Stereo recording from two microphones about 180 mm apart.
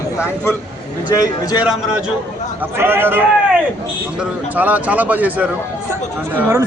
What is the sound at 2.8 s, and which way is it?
Speech, 10° right (ahead or behind).